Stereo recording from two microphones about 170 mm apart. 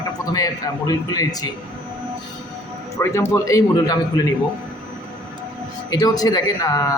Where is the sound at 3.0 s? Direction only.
15° left (ahead or behind).